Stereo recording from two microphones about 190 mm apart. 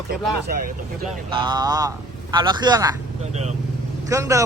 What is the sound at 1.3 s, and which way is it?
A man's voice, 25° right (ahead or behind).